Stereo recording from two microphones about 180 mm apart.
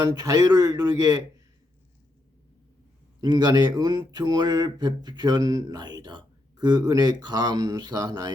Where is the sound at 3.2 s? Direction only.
25° right (ahead or behind).